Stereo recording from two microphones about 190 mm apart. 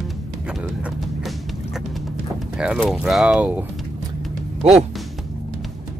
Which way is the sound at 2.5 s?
5° right (ahead or behind).